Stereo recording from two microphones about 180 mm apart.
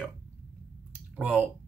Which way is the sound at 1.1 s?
5° right (ahead or behind).